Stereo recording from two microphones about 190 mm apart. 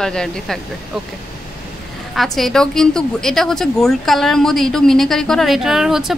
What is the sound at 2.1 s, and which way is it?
A woman's voice, centre (ahead or behind).